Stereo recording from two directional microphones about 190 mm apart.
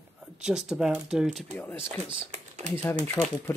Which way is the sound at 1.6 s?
10° left (ahead or behind).